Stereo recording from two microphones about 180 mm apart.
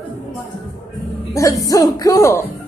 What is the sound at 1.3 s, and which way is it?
Music, 20° left (ahead or behind).